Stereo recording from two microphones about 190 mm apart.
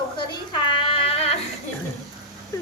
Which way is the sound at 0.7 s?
30° left (ahead or behind).